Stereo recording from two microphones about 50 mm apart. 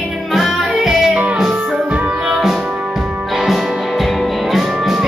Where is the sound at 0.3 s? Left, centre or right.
Centre.